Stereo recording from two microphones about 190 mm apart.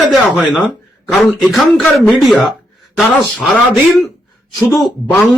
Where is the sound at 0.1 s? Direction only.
Centre (ahead or behind).